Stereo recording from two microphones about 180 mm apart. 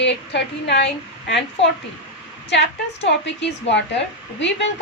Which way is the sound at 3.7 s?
80° left.